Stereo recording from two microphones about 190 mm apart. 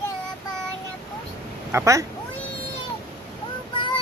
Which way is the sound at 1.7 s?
15° right (ahead or behind).